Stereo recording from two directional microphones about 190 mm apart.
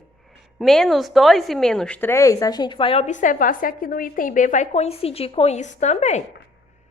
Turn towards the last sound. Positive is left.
turn(degrees=35)  # may be behind; listen again after turning